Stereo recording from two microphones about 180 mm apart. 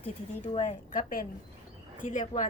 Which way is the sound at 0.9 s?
50° left (ahead or behind).